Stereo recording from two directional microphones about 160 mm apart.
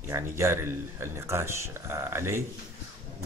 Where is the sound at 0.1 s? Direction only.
15° right (ahead or behind).